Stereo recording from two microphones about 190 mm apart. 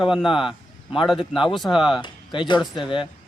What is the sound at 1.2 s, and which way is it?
Speech, 25° left (ahead or behind).